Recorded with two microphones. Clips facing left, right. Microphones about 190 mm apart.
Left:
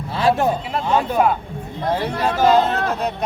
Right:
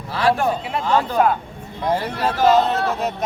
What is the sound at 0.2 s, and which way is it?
Speech, 25° left (ahead or behind).